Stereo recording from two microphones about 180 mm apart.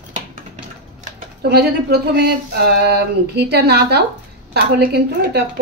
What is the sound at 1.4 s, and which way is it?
A woman's voice, 60° right (ahead or behind).